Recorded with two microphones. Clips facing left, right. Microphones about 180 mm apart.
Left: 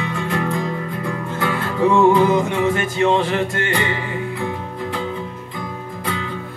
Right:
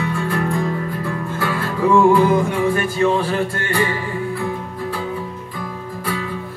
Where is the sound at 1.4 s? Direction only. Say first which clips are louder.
Left 2 dB; 25° left (ahead or behind).